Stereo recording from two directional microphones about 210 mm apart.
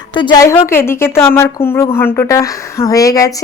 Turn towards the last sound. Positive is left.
turn(degrees=15)  # may be behind; listen again after turning